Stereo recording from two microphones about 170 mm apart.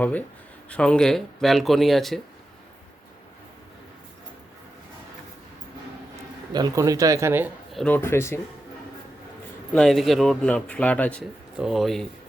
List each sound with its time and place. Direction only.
0.0 s speech: 10° left (ahead or behind)
6.5 s speech: 20° right (ahead or behind)
7.7 s speech: 5° left (ahead or behind)
9.7 s speech: centre (ahead or behind)
11.5 s speech: centre (ahead or behind)